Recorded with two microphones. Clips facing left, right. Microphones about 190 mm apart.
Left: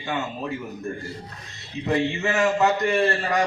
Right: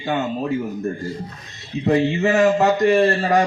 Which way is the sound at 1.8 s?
35° right (ahead or behind).